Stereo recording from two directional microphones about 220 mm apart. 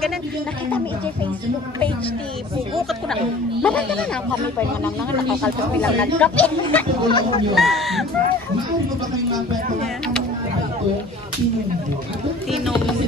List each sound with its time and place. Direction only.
3.6 s speech: 5° left (ahead or behind)
5.4 s speech: 5° left (ahead or behind)
7.1 s speech: 25° left (ahead or behind)
7.5 s speech: centre (ahead or behind)